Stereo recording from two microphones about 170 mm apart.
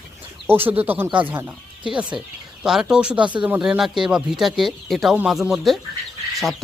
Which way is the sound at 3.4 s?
10° right (ahead or behind).